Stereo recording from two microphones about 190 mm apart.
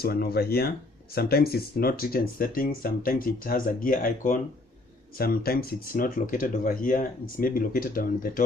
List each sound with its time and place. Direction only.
0.0 s speech: 55° left (ahead or behind)